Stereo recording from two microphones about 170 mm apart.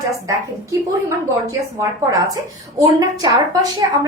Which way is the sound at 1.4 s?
20° right (ahead or behind).